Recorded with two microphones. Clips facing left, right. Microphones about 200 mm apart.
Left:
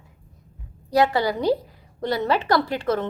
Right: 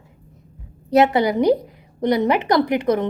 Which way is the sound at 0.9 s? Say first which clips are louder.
Right 4 dB; 20° right (ahead or behind).